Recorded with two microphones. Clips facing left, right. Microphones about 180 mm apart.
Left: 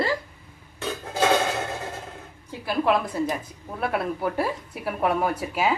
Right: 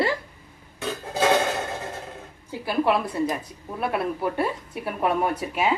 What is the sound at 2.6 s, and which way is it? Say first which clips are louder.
Speech: even; 5° right (ahead or behind).